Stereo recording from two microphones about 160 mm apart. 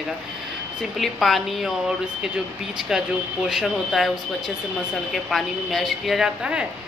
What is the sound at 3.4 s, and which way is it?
Speech, centre (ahead or behind).